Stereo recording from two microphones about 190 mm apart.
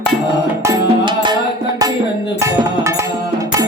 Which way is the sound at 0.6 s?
20° right (ahead or behind).